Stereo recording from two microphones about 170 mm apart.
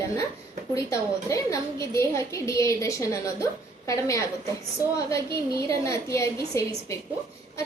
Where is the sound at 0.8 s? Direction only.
20° left (ahead or behind).